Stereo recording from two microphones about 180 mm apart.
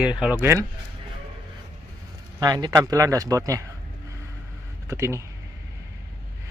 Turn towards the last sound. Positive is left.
turn(degrees=-15)  # may be behind; listen again after turning